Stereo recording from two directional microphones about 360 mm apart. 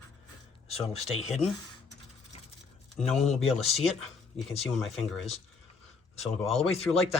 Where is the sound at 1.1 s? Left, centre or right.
Centre.